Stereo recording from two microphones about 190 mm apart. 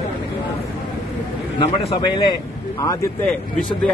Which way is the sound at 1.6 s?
30° left (ahead or behind).